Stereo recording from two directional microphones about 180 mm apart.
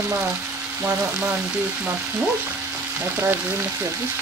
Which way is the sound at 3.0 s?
10° right (ahead or behind).